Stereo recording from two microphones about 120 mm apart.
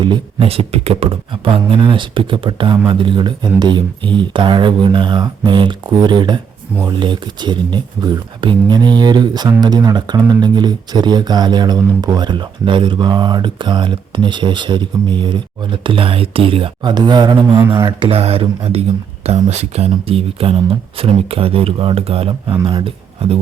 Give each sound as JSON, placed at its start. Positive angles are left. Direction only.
{"t": 0.0, "sound": "speech", "side_deg": -45}
{"t": 18.0, "sound": "speech", "side_deg": -55}